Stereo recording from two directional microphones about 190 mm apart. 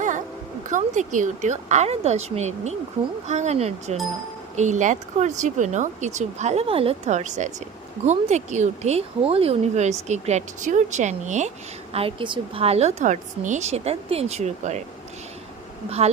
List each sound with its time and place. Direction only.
0.7 s speech: 40° right (ahead or behind)
11.9 s speech: 25° right (ahead or behind)